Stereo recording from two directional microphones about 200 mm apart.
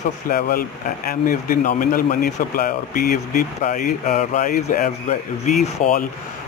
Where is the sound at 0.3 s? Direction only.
45° left (ahead or behind).